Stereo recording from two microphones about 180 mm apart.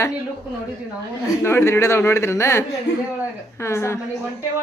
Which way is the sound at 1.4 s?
15° left (ahead or behind).